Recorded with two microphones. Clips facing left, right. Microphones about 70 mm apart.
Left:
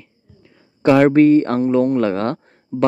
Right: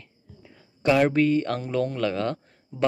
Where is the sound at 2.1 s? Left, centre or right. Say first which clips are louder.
Left 7 dB; left.